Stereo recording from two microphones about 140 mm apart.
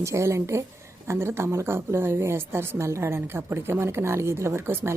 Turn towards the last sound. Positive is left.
turn(degrees=-15)  # may be behind; listen again after turning